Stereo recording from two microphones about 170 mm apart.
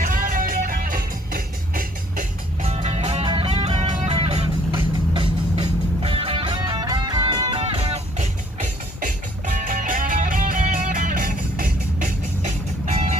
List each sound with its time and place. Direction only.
0.0 s music: 55° right (ahead or behind); by 8.3 s 35° right (ahead or behind)
9.0 s music: 50° right (ahead or behind)
12.4 s vehicle: 45° right (ahead or behind)